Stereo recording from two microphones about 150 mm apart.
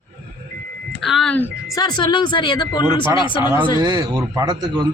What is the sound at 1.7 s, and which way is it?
Speech, 30° left (ahead or behind).